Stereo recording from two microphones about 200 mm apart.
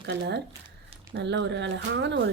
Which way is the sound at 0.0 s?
60° right (ahead or behind).